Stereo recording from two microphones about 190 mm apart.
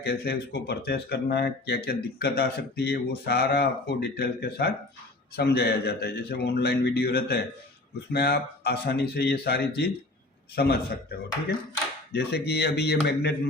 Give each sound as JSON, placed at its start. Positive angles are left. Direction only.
{"t": 0.0, "sound": "speech", "side_deg": 55}
{"t": 12.1, "sound": "speech", "side_deg": 60}